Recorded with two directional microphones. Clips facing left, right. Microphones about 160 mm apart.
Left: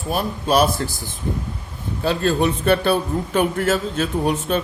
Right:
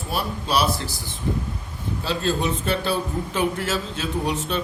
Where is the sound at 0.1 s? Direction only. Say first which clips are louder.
Left 5 dB; 50° left (ahead or behind).